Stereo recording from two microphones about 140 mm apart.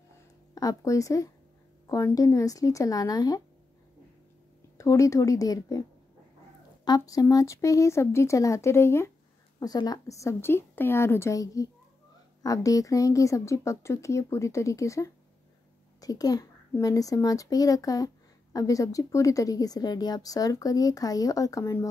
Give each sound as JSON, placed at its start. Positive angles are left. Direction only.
{"t": 0.6, "sound": "a child's voice", "side_deg": 25}
{"t": 4.7, "sound": "a child's voice", "side_deg": 20}